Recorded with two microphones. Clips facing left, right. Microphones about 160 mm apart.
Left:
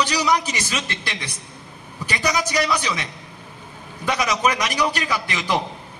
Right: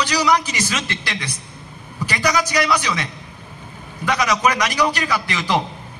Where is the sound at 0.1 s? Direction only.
25° left (ahead or behind).